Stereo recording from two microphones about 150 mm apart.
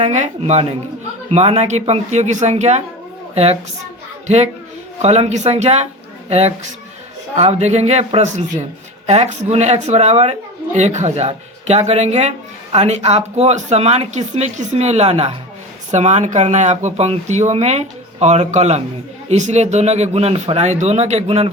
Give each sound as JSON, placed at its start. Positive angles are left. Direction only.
{"t": 0.0, "sound": "speech", "side_deg": -50}
{"t": 5.0, "sound": "speech", "side_deg": -45}